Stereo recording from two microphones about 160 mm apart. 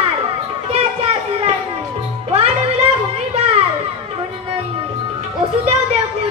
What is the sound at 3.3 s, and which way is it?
Children playing, 40° right (ahead or behind).